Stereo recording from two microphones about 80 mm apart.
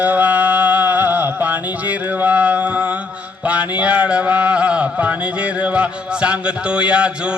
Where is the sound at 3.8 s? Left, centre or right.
Centre.